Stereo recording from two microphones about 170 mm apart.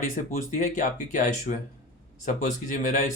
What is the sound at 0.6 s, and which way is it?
Speech, 45° left (ahead or behind).